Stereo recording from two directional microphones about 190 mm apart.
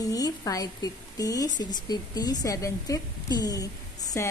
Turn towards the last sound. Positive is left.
turn(degrees=20)  # may be behind; listen again after turning